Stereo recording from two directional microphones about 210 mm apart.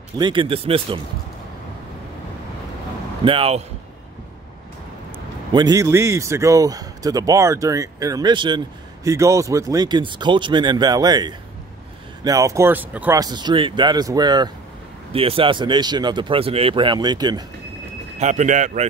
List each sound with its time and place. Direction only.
0.2 s speech: 25° right (ahead or behind)
3.3 s speech: 25° right (ahead or behind)
5.5 s a man's voice: 20° right (ahead or behind)
18.2 s a man's voice: 35° right (ahead or behind)